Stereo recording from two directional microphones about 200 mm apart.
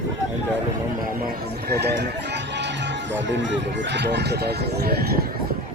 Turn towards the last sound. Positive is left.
turn(degrees=-50)  # may be behind; listen again after turning